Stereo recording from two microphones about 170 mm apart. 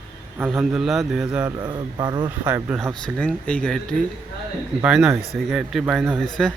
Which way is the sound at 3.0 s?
5° left (ahead or behind).